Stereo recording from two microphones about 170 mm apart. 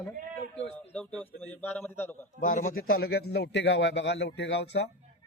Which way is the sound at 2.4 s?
50° left (ahead or behind).